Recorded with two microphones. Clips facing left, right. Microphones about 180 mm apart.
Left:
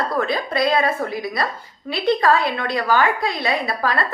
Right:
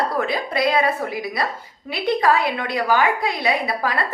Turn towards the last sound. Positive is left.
turn(degrees=-15)  # may be behind; listen again after turning